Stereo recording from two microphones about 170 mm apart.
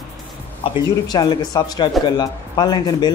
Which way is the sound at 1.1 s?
25° left (ahead or behind).